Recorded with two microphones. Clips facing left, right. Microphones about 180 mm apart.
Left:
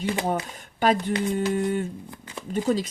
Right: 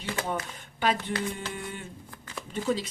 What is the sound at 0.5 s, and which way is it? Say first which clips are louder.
A woman's voice: left 5 dB; 45° left (ahead or behind).